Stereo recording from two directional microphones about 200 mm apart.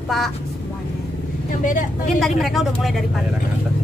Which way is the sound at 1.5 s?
40° left (ahead or behind).